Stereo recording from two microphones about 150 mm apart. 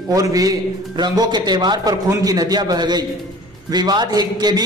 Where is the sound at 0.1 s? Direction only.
25° right (ahead or behind).